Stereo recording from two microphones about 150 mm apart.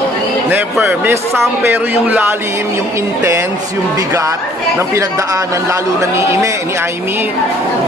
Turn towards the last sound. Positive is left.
turn(degrees=-20)  # may be behind; listen again after turning